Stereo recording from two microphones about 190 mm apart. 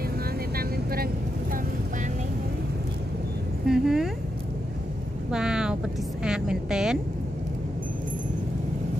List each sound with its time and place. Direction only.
3.6 s speech: centre (ahead or behind)
5.3 s vehicle: 5° right (ahead or behind)
6.2 s speech: 5° right (ahead or behind)